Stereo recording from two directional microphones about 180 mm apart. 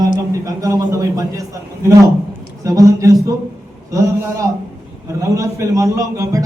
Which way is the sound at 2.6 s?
20° right (ahead or behind).